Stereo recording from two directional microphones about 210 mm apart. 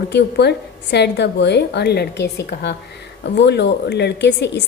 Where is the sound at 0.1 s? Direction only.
55° left (ahead or behind).